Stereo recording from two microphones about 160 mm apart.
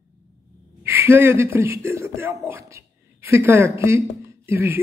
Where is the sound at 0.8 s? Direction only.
15° right (ahead or behind).